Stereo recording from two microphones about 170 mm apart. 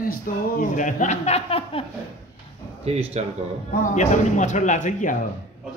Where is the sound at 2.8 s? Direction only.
35° right (ahead or behind).